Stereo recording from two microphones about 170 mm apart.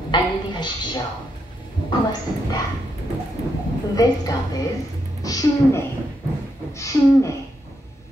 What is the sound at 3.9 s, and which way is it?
A woman's voice, 20° left (ahead or behind).